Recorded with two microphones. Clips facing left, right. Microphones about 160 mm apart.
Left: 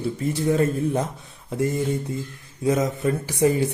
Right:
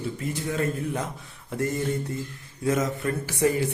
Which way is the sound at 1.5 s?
15° left (ahead or behind).